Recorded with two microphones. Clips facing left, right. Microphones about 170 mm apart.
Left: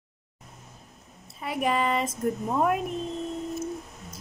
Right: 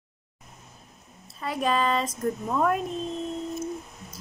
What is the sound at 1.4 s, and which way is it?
A woman's voice, 20° left (ahead or behind).